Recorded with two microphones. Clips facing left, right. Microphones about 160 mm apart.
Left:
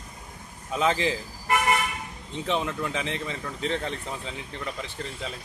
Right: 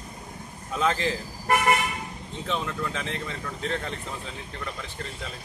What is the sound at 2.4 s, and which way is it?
A man's voice, 15° left (ahead or behind).